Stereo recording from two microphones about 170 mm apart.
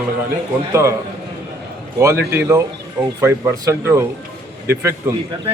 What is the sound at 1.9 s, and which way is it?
A man's voice, 15° right (ahead or behind).